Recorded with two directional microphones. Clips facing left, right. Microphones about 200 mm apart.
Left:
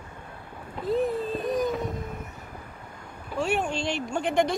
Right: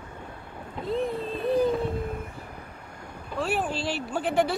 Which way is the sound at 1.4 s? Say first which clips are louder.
Right 6 dB; 30° right (ahead or behind).